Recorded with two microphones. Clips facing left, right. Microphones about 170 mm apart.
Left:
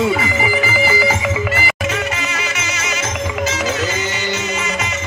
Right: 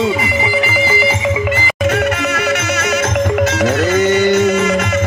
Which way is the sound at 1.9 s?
60° right (ahead or behind).